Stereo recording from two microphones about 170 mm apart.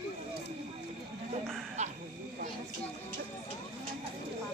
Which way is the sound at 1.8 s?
40° right (ahead or behind).